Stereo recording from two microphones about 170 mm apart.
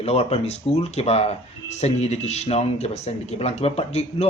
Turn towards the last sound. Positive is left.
turn(degrees=40)  # may be behind; listen again after turning